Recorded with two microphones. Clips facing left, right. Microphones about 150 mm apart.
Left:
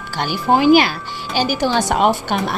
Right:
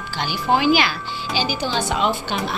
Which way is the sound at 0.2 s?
45° left (ahead or behind).